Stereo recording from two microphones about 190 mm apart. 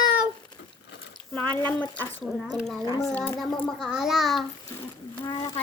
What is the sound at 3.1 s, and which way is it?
A child's voice, 5° left (ahead or behind).